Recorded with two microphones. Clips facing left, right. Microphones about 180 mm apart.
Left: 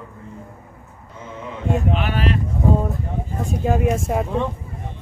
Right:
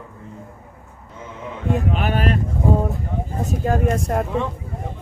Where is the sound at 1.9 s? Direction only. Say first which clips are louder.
Right 1 dB; 45° right (ahead or behind).